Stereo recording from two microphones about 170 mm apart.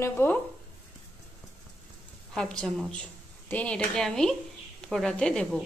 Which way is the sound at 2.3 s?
5° left (ahead or behind).